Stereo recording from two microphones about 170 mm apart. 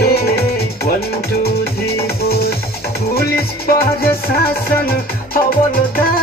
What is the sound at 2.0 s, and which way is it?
Music, 65° left (ahead or behind).